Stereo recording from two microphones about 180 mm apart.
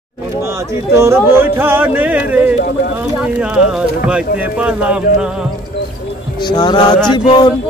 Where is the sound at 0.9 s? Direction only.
15° right (ahead or behind).